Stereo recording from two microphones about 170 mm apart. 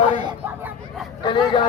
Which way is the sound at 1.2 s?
30° left (ahead or behind).